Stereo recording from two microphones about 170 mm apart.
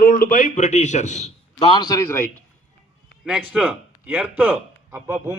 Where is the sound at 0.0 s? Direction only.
55° left (ahead or behind); by 1.7 s 40° left (ahead or behind).